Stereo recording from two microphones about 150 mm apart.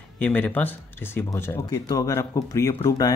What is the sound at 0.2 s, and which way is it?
Speech, 10° left (ahead or behind).